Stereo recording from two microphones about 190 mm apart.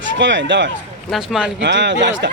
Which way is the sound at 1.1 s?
5° right (ahead or behind).